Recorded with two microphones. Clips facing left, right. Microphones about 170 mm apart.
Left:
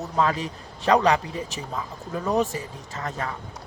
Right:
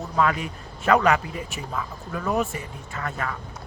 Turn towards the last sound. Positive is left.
turn(degrees=25)  # may be behind; listen again after turning